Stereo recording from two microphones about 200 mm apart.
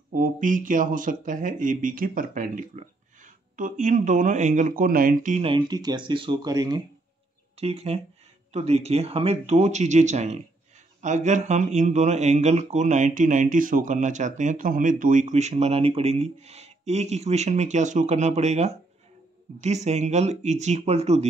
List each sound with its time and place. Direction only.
0.1 s speech: 40° right (ahead or behind); by 6.8 s 20° right (ahead or behind)
7.6 s speech: 30° right (ahead or behind)